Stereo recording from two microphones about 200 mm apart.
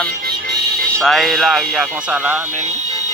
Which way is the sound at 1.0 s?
Centre (ahead or behind).